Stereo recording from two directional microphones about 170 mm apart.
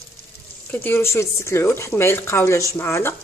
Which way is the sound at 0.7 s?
10° left (ahead or behind).